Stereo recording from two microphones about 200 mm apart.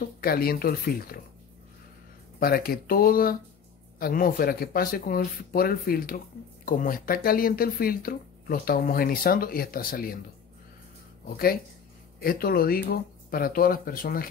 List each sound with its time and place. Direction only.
0.2 s speech: 50° left (ahead or behind)
2.4 s speech: 50° left (ahead or behind)
11.2 s speech: 45° left (ahead or behind)